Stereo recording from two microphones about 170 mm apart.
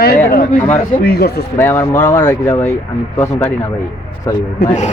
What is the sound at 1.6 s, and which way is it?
Speech, 15° left (ahead or behind).